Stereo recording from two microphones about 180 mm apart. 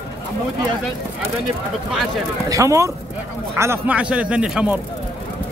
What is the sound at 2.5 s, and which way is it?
Speech, 15° right (ahead or behind).